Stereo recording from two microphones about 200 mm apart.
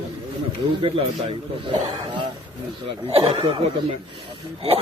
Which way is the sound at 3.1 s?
30° right (ahead or behind).